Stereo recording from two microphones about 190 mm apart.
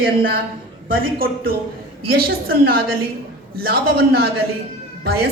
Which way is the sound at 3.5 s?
55° right (ahead or behind).